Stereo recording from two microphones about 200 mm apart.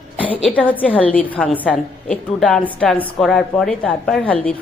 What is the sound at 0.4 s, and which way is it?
A woman's voice, 5° left (ahead or behind).